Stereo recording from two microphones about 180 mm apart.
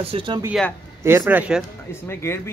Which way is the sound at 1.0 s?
15° right (ahead or behind).